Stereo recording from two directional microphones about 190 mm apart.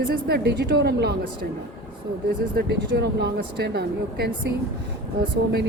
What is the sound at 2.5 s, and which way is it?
A woman's voice, 60° right (ahead or behind).